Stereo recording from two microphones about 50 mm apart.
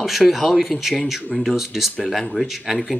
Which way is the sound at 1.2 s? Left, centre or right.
Left.